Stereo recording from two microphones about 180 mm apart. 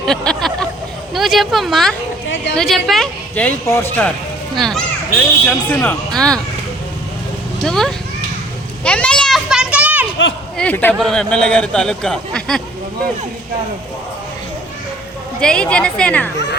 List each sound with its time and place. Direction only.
0.0 s a sound: centre (ahead or behind)
1.1 s speech: centre (ahead or behind)
2.3 s a sound: 80° left
2.6 s speech: centre (ahead or behind)
4.5 s speech: centre (ahead or behind)
7.6 s speech: centre (ahead or behind)
8.8 s a sound: 5° left (ahead or behind)
10.6 s speech: 10° left (ahead or behind)
15.4 s speech: 5° left (ahead or behind)